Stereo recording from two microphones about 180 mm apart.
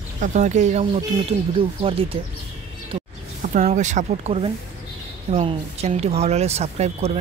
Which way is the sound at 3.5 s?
45° right (ahead or behind).